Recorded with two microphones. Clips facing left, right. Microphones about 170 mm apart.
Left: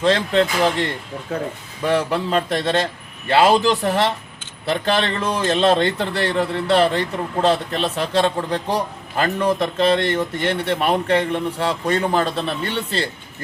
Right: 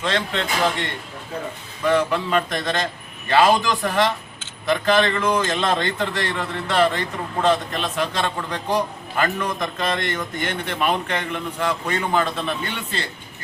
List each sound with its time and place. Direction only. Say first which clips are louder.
0.0 s a man's voice: left 7 dB; 35° left (ahead or behind)
1.3 s speech: left 5 dB; 70° left (ahead or behind)
1.9 s a man's voice: even; 35° left (ahead or behind)